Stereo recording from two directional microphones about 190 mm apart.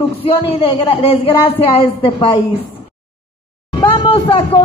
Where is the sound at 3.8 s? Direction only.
25° left (ahead or behind).